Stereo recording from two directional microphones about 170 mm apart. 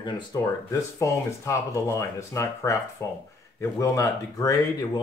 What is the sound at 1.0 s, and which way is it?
Speech, 15° left (ahead or behind).